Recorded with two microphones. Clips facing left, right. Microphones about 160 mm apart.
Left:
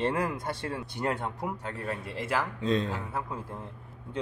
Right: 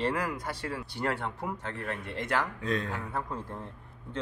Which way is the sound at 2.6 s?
25° left (ahead or behind).